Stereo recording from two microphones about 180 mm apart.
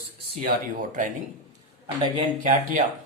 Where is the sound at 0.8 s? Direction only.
50° right (ahead or behind).